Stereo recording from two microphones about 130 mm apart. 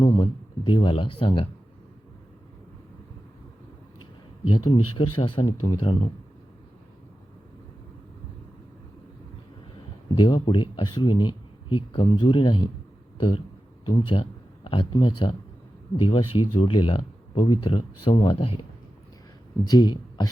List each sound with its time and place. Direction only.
0.0 s speech: 35° left (ahead or behind)
4.5 s speech: 40° left (ahead or behind)
10.2 s speech: 35° left (ahead or behind)
19.7 s speech: 30° left (ahead or behind)